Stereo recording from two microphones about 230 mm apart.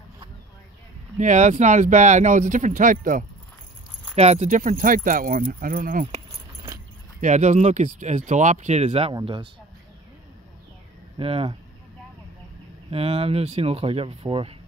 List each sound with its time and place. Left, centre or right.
1.1 s speech: right
11.1 s speech: right
12.9 s speech: right